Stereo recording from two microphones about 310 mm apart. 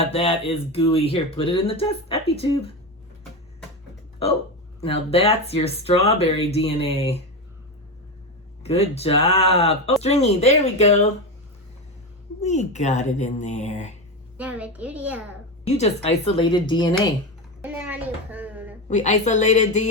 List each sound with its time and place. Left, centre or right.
0.0 s speech: centre
4.8 s speech: centre
8.6 s speech: centre
12.4 s speech: left
14.3 s a woman's voice: centre
15.6 s a woman's voice: left
17.6 s a sound: centre
18.9 s speech: left